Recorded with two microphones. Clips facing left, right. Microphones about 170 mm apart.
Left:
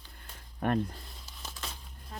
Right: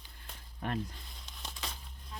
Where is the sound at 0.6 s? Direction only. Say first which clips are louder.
Left 7 dB; 55° left (ahead or behind).